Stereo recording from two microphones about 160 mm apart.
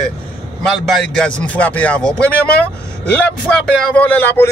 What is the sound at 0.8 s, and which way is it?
A man's voice, 5° left (ahead or behind).